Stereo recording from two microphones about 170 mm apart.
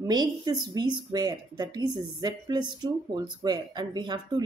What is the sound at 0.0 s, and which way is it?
A woman's voice, 25° right (ahead or behind).